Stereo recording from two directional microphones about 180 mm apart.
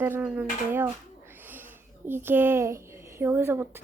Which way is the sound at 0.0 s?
10° right (ahead or behind).